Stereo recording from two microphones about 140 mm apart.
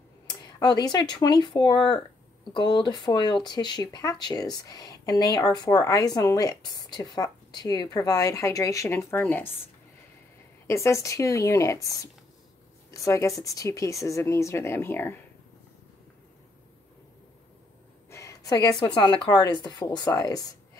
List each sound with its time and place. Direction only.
0.3 s speech: 30° left (ahead or behind); by 9.5 s 15° left (ahead or behind)
10.7 s speech: 20° left (ahead or behind)
18.1 s speech: 25° left (ahead or behind)